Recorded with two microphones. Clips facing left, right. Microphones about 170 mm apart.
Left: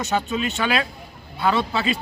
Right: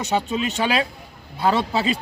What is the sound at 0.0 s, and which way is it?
Speech, 30° right (ahead or behind).